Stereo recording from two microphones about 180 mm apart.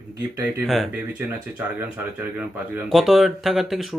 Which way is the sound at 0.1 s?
15° right (ahead or behind).